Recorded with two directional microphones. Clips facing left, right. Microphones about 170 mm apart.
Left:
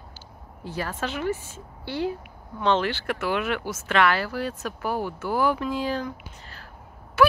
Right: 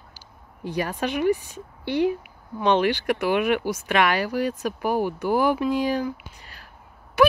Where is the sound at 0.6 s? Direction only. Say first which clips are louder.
Right 4 dB; 15° right (ahead or behind).